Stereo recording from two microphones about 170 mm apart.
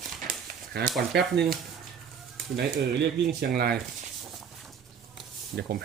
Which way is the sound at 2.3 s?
70° right (ahead or behind).